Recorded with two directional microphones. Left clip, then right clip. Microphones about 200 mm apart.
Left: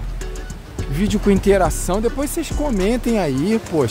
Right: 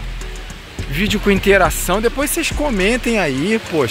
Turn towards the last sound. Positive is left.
turn(degrees=10)  # may be behind; listen again after turning